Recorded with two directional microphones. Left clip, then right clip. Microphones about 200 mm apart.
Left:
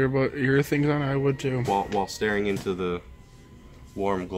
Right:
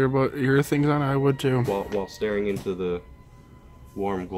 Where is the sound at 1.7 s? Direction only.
40° left (ahead or behind).